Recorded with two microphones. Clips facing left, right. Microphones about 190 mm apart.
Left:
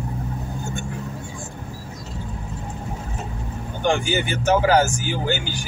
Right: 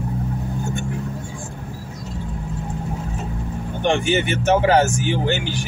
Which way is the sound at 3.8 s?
20° right (ahead or behind).